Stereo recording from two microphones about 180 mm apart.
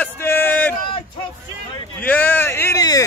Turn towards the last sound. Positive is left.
turn(degrees=20)  # may be behind; listen again after turning